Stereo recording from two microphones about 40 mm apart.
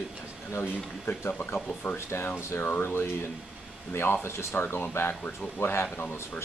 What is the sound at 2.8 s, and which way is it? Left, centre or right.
Speech, left.